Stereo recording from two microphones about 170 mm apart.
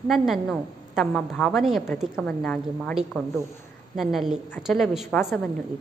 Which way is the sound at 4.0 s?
Centre (ahead or behind).